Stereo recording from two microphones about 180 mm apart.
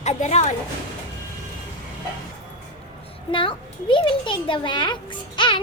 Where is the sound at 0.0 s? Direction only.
40° left (ahead or behind).